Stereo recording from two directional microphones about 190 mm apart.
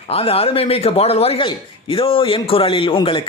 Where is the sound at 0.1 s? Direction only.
30° left (ahead or behind).